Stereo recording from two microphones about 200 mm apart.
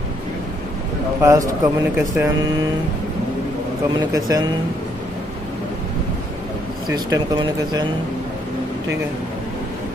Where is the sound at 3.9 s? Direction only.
20° right (ahead or behind).